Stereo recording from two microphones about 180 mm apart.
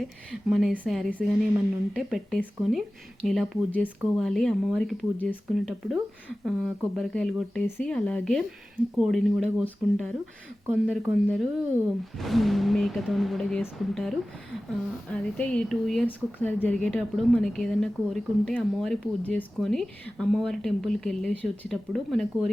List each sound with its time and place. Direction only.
0.3 s speech: centre (ahead or behind)